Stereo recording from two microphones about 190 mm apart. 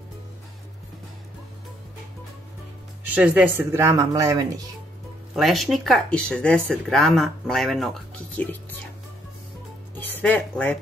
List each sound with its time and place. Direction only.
3.2 s a woman's voice: 10° right (ahead or behind)
5.3 s speech: centre (ahead or behind)
9.9 s speech: 10° left (ahead or behind)